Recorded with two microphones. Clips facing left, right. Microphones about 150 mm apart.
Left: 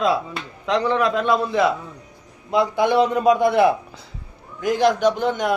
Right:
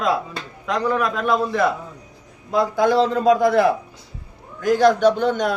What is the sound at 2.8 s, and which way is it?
Speech, 15° left (ahead or behind).